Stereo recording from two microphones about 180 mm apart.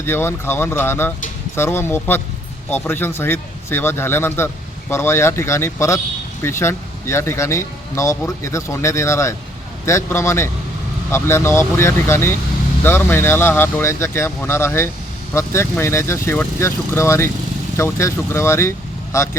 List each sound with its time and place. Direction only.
0.0 s speech: 15° left (ahead or behind)